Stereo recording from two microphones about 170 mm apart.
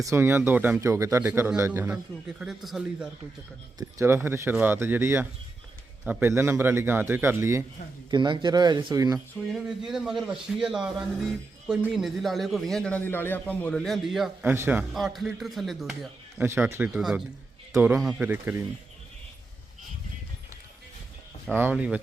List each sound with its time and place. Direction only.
0.0 s speech: 15° right (ahead or behind)
3.8 s speech: 15° right (ahead or behind)
8.1 s speech: 25° right (ahead or behind)
9.1 s a man's voice: centre (ahead or behind)
14.5 s speech: 10° right (ahead or behind)
14.9 s a man's voice: centre (ahead or behind)
16.4 s speech: 15° right (ahead or behind)
16.9 s a man's voice: centre (ahead or behind)
17.7 s speech: 15° right (ahead or behind)
21.5 s speech: 10° right (ahead or behind)